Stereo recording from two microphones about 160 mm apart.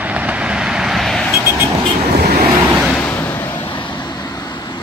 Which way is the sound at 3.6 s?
30° left (ahead or behind).